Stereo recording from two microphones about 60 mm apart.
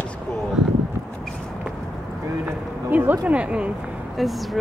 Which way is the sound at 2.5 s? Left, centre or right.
Right.